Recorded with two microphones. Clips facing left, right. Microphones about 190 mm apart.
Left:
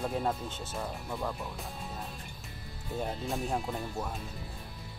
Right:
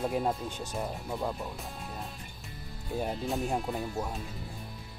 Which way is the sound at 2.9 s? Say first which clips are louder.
Right 2 dB; 5° right (ahead or behind).